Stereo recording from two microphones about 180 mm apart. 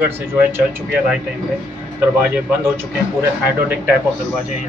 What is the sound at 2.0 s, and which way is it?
Speech, 10° right (ahead or behind).